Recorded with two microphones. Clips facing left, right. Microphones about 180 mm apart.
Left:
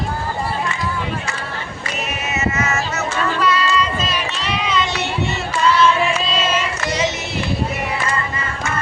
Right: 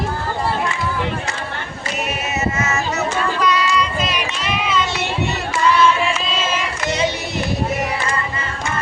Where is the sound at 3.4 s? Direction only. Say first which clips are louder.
Left 1 dB; 15° right (ahead or behind).